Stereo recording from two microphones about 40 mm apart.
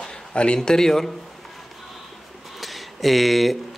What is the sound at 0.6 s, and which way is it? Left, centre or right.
Speech, centre.